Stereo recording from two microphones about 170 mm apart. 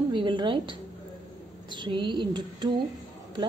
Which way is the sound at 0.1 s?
30° right (ahead or behind).